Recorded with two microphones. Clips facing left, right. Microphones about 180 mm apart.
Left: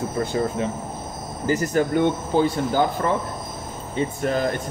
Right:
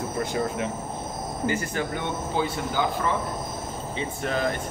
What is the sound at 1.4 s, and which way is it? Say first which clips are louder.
Speech: left 7 dB; 40° left (ahead or behind).